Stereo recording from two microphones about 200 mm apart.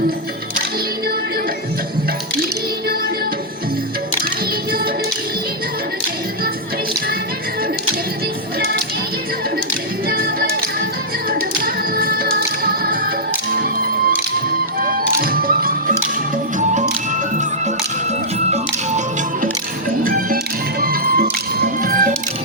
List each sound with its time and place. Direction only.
11.3 s music: 45° right (ahead or behind)
18.5 s music: 35° right (ahead or behind)